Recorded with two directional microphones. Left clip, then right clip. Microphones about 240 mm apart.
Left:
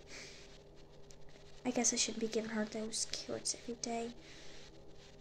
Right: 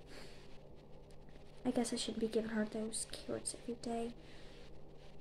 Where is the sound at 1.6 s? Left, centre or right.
Centre.